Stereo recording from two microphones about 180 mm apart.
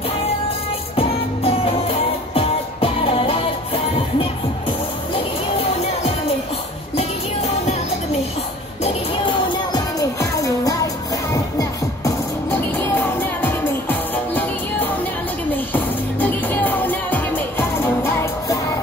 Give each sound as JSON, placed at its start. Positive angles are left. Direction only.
{"t": 0.9, "sound": "music", "side_deg": 30}
{"t": 8.8, "sound": "music", "side_deg": 30}